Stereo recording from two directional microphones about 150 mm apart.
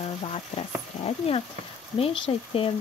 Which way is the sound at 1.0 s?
40° left (ahead or behind).